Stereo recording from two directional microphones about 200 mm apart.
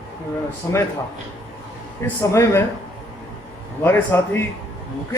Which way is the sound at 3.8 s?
10° left (ahead or behind).